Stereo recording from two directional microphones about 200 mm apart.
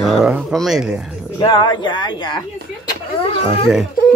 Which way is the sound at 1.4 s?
20° left (ahead or behind).